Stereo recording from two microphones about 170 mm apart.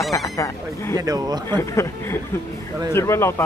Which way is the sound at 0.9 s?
20° right (ahead or behind).